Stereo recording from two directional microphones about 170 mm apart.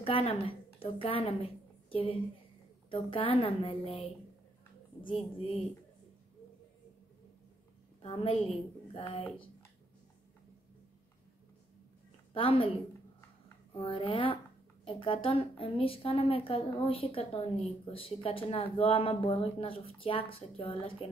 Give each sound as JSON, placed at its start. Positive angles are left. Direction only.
{"t": 0.0, "sound": "a woman's voice", "side_deg": 35}
{"t": 8.0, "sound": "a woman's voice", "side_deg": 35}
{"t": 12.4, "sound": "a woman's voice", "side_deg": 30}
{"t": 13.7, "sound": "a woman's voice", "side_deg": 30}